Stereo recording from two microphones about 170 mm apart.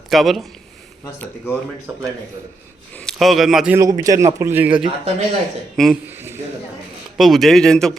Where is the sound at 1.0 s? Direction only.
15° left (ahead or behind).